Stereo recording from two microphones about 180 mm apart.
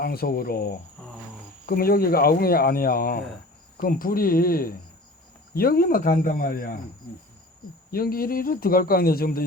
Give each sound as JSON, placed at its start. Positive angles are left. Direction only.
{"t": 0.0, "sound": "speech", "side_deg": 55}
{"t": 7.9, "sound": "speech", "side_deg": 55}